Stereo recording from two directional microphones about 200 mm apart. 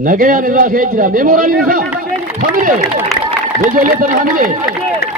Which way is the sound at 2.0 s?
45° right (ahead or behind).